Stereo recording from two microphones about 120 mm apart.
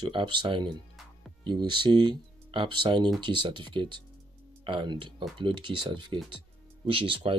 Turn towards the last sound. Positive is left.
turn(degrees=-50)  # may be behind; listen again after turning